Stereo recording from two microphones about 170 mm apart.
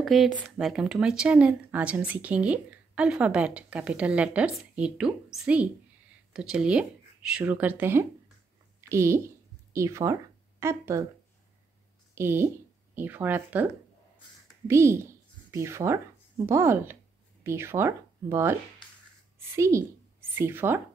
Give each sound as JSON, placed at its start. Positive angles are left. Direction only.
{"t": 0.0, "sound": "a woman's voice", "side_deg": 0}
{"t": 12.2, "sound": "speech", "side_deg": -15}
{"t": 14.7, "sound": "speech", "side_deg": -15}